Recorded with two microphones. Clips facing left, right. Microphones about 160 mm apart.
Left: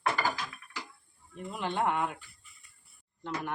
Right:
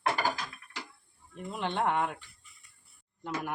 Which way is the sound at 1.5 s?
Centre (ahead or behind).